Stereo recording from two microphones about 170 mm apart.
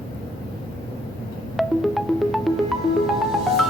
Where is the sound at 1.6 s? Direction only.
Centre (ahead or behind).